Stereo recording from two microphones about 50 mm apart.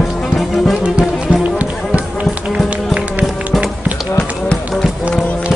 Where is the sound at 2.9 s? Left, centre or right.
Right.